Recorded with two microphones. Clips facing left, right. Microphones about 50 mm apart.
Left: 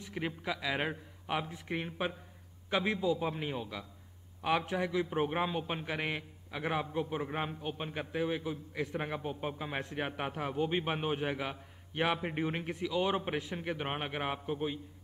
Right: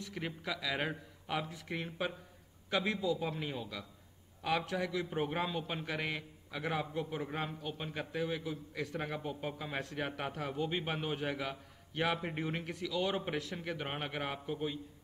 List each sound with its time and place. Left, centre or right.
0.0 s a man's voice: centre